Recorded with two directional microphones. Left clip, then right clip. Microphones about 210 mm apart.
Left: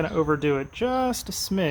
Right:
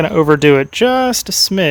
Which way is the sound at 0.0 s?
55° right (ahead or behind).